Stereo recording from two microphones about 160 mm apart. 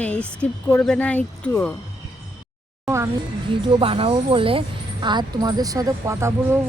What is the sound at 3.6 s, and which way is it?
A woman's voice, 35° right (ahead or behind).